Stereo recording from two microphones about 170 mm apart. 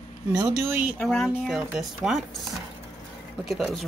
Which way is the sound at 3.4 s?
Centre (ahead or behind).